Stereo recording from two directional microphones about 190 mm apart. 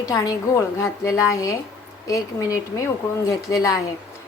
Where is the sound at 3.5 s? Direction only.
20° left (ahead or behind).